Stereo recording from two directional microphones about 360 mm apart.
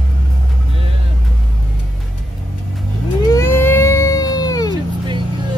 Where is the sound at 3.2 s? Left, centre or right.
Centre.